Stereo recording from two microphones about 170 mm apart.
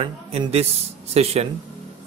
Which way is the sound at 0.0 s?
35° right (ahead or behind).